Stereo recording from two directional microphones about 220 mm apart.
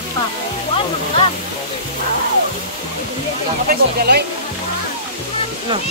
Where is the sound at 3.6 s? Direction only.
45° right (ahead or behind).